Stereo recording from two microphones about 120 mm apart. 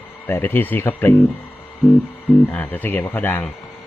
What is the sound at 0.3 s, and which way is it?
Speech, 20° left (ahead or behind).